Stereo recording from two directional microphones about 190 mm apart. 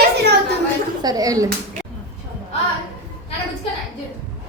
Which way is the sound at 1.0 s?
20° right (ahead or behind).